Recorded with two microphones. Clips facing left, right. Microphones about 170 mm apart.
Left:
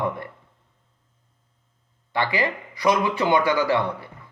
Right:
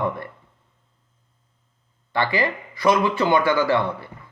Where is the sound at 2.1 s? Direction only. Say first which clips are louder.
Right 2 dB; 15° left (ahead or behind).